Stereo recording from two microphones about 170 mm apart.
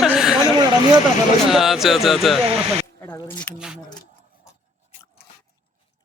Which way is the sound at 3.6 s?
5° right (ahead or behind).